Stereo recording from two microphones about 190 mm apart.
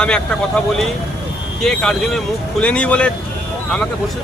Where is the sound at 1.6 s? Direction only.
5° left (ahead or behind).